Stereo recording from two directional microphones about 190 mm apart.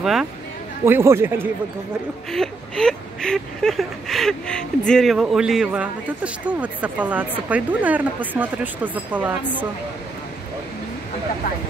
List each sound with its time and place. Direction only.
0.0 s a man's voice: centre (ahead or behind)
0.8 s speech: 15° right (ahead or behind)
2.3 s speech: 5° left (ahead or behind)